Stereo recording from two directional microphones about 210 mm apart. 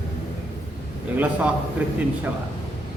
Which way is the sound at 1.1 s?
5° right (ahead or behind).